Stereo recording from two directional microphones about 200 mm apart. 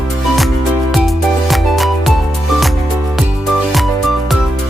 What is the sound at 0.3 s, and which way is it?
Music, centre (ahead or behind).